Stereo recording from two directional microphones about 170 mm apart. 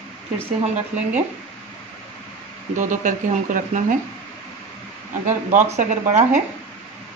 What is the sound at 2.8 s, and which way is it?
Speech, 50° right (ahead or behind).